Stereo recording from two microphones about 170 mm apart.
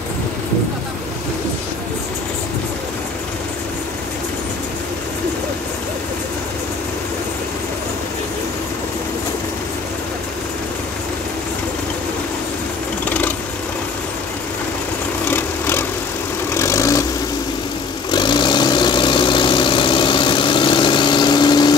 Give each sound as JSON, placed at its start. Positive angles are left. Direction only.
{"t": 15.2, "sound": "vehicle", "side_deg": 10}
{"t": 18.1, "sound": "vehicle", "side_deg": 25}